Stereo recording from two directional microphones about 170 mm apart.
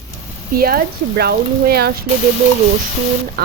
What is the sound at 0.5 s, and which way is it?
Speech, 60° right (ahead or behind).